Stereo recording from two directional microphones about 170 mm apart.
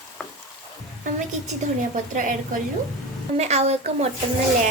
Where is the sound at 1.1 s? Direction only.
45° right (ahead or behind).